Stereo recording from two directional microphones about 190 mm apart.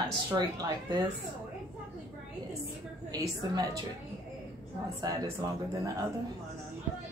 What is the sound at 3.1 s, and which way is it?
Speech, 20° right (ahead or behind).